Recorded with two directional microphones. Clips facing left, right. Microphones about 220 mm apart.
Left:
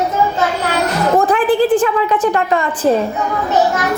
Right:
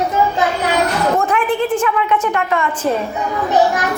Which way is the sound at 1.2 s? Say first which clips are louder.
Left 4 dB; 35° left (ahead or behind).